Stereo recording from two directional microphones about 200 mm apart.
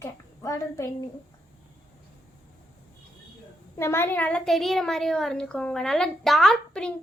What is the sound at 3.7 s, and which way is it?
A woman's voice, 10° left (ahead or behind).